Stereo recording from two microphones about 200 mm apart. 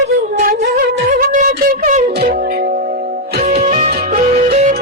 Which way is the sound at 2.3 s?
50° right (ahead or behind).